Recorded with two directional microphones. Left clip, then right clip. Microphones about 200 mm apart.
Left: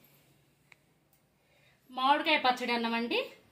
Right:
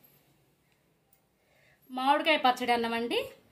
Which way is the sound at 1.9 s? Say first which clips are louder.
Right 1 dB; 35° right (ahead or behind).